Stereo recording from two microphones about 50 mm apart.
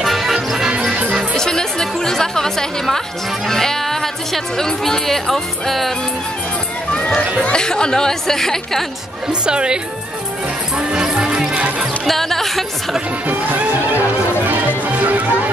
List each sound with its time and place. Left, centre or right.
0.0 s music: centre
1.3 s music: centre
3.4 s speech: centre
7.5 s speech: centre
9.3 s speech: centre
10.9 s music: centre
12.1 s music: centre
15.0 s music: right